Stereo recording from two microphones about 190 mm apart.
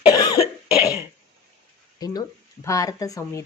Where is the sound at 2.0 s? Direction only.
20° left (ahead or behind).